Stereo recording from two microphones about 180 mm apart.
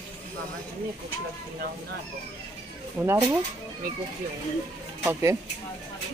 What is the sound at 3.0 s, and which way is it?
Speech, 15° right (ahead or behind).